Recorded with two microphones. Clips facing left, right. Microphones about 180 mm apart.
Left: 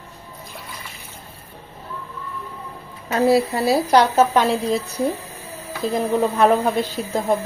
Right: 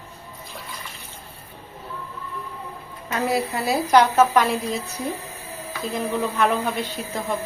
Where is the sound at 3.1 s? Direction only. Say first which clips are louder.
Left 7 dB; 30° left (ahead or behind).